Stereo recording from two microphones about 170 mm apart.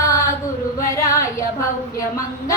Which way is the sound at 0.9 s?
20° left (ahead or behind).